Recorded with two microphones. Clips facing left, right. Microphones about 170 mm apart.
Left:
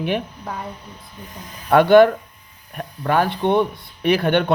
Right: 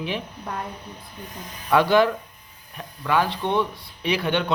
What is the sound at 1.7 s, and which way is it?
A man's voice, 55° left (ahead or behind).